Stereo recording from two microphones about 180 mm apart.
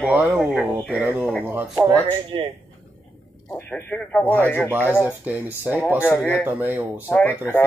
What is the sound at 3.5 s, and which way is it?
Speech, 10° left (ahead or behind).